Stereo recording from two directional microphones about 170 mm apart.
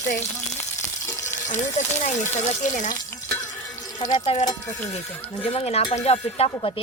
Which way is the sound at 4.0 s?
45° left (ahead or behind).